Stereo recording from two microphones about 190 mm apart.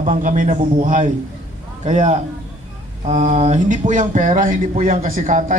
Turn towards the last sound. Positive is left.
turn(degrees=-40)  # may be behind; listen again after turning